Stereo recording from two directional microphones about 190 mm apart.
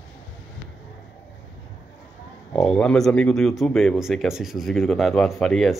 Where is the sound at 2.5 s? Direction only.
5° left (ahead or behind).